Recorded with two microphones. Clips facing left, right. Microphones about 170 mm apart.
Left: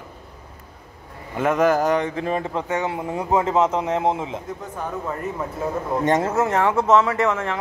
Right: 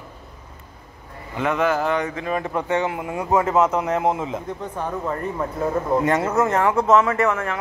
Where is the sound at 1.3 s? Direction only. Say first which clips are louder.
Left 3 dB; 45° left (ahead or behind).